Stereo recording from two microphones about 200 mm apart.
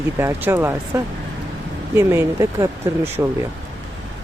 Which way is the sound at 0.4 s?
10° right (ahead or behind).